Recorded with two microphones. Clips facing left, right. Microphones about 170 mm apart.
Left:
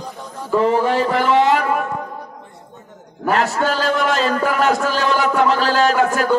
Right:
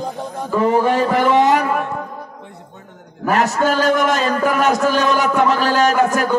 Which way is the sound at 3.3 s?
15° right (ahead or behind).